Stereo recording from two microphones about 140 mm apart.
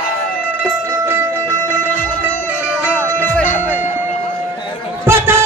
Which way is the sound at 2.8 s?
15° left (ahead or behind).